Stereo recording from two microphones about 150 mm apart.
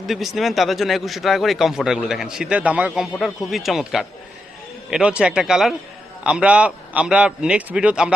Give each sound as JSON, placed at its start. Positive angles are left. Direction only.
{"t": 0.1, "sound": "a man's voice", "side_deg": 0}